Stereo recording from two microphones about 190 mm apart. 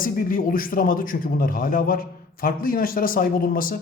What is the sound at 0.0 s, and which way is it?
A man's voice, 45° left (ahead or behind).